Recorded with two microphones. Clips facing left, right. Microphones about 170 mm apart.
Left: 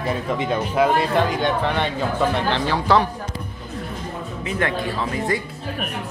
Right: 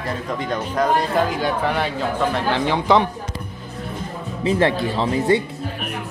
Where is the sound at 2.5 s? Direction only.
15° right (ahead or behind).